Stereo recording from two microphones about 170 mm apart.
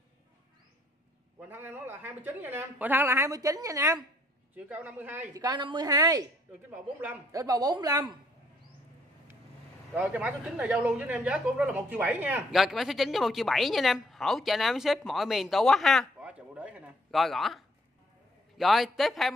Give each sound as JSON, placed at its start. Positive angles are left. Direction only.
{"t": 1.5, "sound": "speech", "side_deg": -10}
{"t": 5.4, "sound": "a woman's voice", "side_deg": -25}
{"t": 7.4, "sound": "a woman's voice", "side_deg": -20}
{"t": 9.9, "sound": "a woman's voice", "side_deg": -10}